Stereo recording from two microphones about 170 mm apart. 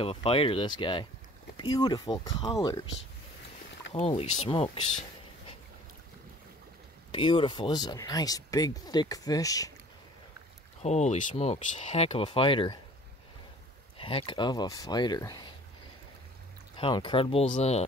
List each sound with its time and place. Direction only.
0.0 s speech: 35° left (ahead or behind)
4.0 s speech: 35° left (ahead or behind)
7.1 s speech: 30° left (ahead or behind)
10.8 s speech: 40° left (ahead or behind)
13.9 s speech: 30° left (ahead or behind)
16.7 s speech: 30° left (ahead or behind)